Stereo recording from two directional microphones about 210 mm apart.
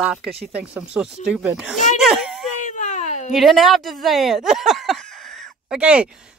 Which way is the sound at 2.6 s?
35° left (ahead or behind).